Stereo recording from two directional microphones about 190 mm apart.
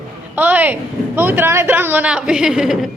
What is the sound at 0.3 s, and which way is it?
A woman's voice, 10° right (ahead or behind).